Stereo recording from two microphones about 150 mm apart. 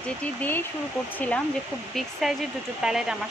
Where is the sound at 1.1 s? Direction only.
10° left (ahead or behind).